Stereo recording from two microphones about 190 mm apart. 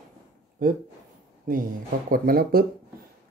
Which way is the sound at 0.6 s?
50° right (ahead or behind).